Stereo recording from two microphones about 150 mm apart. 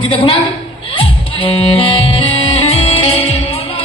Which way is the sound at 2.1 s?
35° left (ahead or behind).